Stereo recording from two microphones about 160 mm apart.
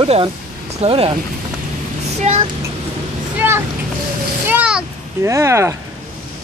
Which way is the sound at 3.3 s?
15° right (ahead or behind).